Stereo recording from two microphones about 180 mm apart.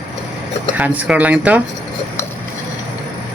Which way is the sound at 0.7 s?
10° right (ahead or behind).